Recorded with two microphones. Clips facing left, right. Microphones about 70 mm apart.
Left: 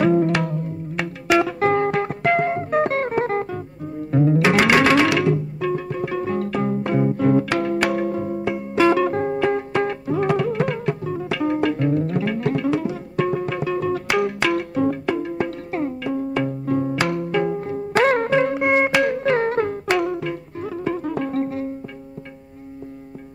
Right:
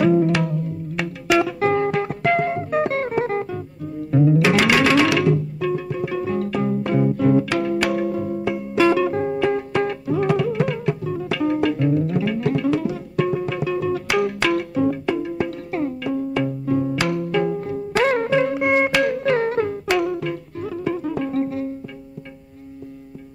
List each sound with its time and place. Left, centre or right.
0.0 s music: left
2.2 s music: left
4.5 s music: left
5.7 s music: left
9.0 s music: left
11.2 s music: left
12.6 s music: left
14.0 s music: left
14.8 s music: left
16.2 s music: left
16.9 s music: left
19.0 s music: left